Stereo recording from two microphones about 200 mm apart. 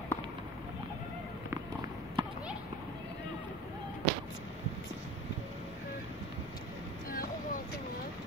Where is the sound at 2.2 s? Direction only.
25° right (ahead or behind).